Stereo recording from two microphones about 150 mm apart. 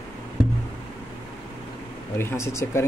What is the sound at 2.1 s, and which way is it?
Speech, 15° left (ahead or behind).